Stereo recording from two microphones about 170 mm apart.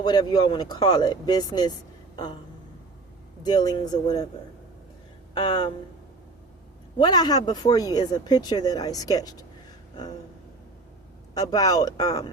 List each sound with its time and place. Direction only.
0.0 s speech: 25° left (ahead or behind)
3.4 s speech: 25° left (ahead or behind)
5.3 s a sound: 25° left (ahead or behind)
7.0 s speech: 25° left (ahead or behind)
11.3 s speech: 20° left (ahead or behind)